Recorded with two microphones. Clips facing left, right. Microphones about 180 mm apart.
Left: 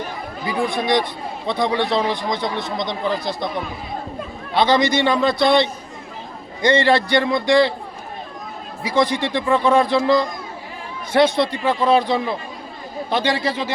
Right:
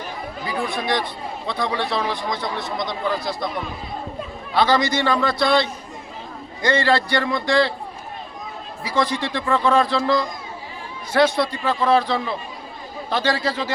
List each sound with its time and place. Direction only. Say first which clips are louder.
0.4 s a man's voice: left 4 dB; 15° left (ahead or behind)
4.5 s speech: left 2 dB; 20° left (ahead or behind)
8.8 s a man's voice: left 3 dB; 20° left (ahead or behind)